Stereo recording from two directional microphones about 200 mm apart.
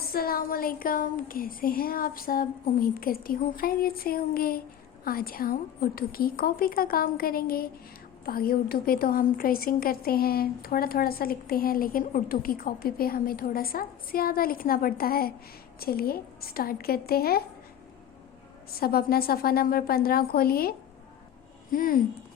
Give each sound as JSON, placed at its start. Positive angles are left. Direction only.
{"t": 0.1, "sound": "a woman's voice", "side_deg": 45}
{"t": 18.7, "sound": "a woman's voice", "side_deg": 50}